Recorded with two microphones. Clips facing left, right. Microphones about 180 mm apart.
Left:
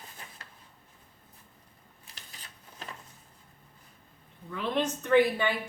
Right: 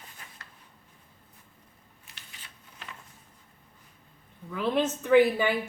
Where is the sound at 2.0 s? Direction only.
35° left (ahead or behind).